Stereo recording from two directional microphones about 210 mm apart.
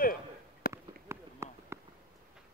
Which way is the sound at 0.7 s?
10° right (ahead or behind).